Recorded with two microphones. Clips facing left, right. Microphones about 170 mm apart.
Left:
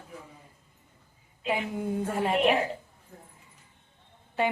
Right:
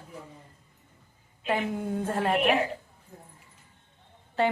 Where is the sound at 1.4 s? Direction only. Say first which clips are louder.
Right 1 dB; 10° left (ahead or behind).